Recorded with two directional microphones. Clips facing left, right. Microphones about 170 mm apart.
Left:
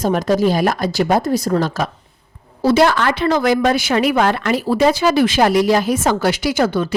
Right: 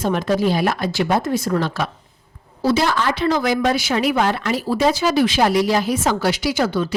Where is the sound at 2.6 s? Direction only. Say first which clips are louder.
Left 5 dB; 60° left (ahead or behind).